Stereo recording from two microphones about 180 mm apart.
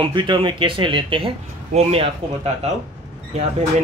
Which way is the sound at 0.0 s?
25° right (ahead or behind).